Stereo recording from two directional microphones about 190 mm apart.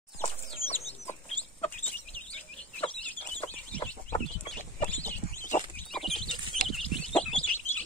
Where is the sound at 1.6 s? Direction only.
10° left (ahead or behind).